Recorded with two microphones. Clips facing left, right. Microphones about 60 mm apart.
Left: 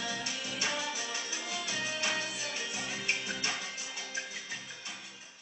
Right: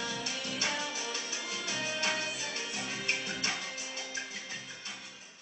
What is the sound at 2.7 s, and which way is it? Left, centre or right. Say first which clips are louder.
Music: right 1 dB; centre.